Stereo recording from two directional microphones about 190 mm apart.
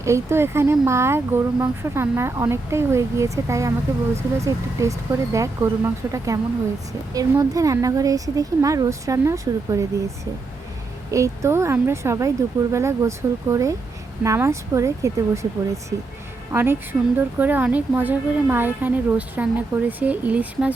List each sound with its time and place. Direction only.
0.0 s speech: 15° right (ahead or behind)
11.1 s speech: 15° right (ahead or behind)